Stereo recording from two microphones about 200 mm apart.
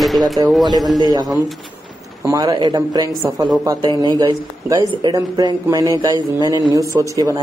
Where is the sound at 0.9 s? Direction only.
20° right (ahead or behind).